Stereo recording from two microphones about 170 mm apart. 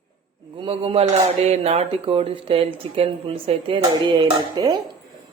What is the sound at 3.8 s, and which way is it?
Dishes, 25° right (ahead or behind).